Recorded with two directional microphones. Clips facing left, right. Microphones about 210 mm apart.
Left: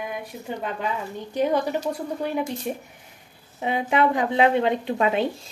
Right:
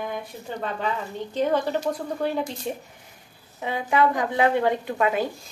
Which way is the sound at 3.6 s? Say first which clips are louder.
Left 1 dB; 20° left (ahead or behind).